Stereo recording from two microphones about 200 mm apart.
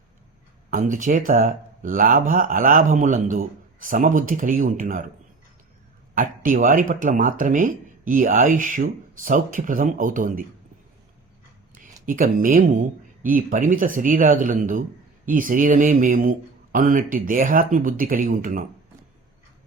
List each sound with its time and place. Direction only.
0.7 s speech: 40° right (ahead or behind)
6.1 s speech: 40° right (ahead or behind)
12.0 s speech: 45° right (ahead or behind)